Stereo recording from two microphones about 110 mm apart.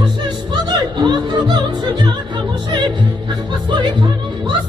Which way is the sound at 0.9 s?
40° right (ahead or behind).